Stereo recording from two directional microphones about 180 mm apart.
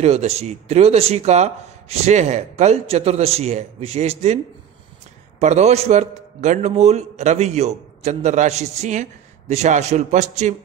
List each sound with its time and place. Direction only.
0.0 s a man's voice: 35° right (ahead or behind)
5.4 s a man's voice: 40° right (ahead or behind)